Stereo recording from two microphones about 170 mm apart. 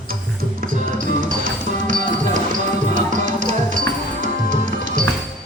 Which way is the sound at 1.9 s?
50° right (ahead or behind).